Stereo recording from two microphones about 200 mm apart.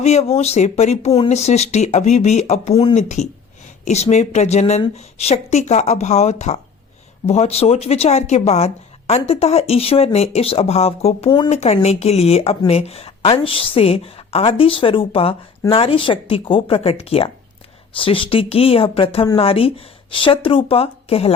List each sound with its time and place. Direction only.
0.0 s speech: 35° left (ahead or behind)